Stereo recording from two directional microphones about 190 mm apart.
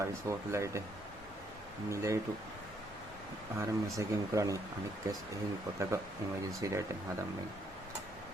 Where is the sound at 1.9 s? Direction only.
15° right (ahead or behind).